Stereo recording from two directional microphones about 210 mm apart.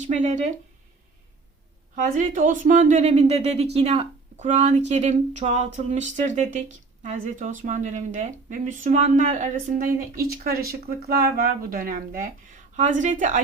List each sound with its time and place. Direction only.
0.1 s speech: 35° right (ahead or behind)
2.0 s speech: 40° right (ahead or behind)